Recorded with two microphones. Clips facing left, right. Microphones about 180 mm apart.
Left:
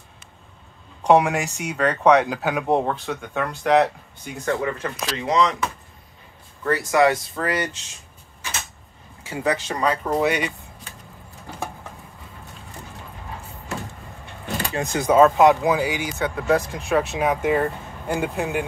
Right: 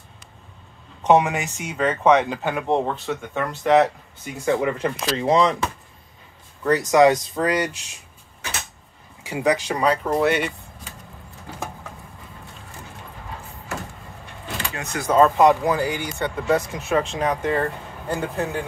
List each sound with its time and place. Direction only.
1.1 s speech: centre (ahead or behind)
4.5 s speech: 20° right (ahead or behind)
4.7 s speech: 30° right (ahead or behind)
6.7 s speech: 20° right (ahead or behind)
9.2 s speech: 15° right (ahead or behind)
10.0 s speech: centre (ahead or behind)
14.6 s vehicle: 30° left (ahead or behind)
15.0 s speech: 5° left (ahead or behind)